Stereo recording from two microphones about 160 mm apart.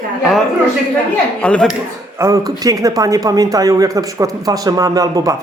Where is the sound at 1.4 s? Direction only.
10° left (ahead or behind).